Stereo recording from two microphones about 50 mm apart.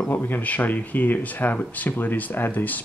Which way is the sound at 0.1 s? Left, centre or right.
Left.